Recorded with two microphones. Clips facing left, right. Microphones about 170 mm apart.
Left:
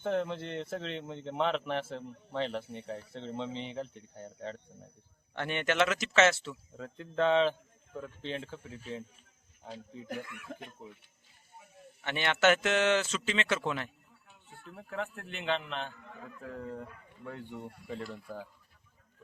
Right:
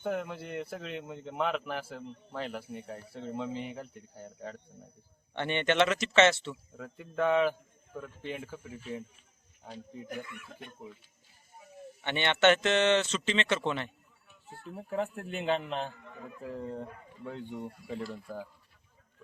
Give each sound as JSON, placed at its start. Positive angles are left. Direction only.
{"t": 0.0, "sound": "speech", "side_deg": -5}
{"t": 6.7, "sound": "speech", "side_deg": -10}
{"t": 8.3, "sound": "speech", "side_deg": 25}
{"t": 8.7, "sound": "speech", "side_deg": -10}
{"t": 10.2, "sound": "speech", "side_deg": 75}
{"t": 12.0, "sound": "speech", "side_deg": 5}
{"t": 14.7, "sound": "a man's voice", "side_deg": -30}